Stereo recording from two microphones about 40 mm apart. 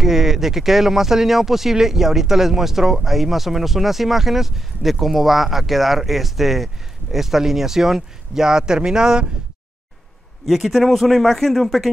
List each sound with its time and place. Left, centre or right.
0.0 s speech: centre
10.4 s a man's voice: centre